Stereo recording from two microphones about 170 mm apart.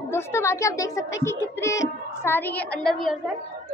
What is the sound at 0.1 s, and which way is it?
A child's voice, 15° left (ahead or behind).